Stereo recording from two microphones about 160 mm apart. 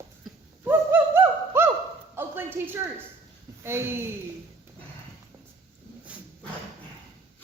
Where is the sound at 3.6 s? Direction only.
15° right (ahead or behind).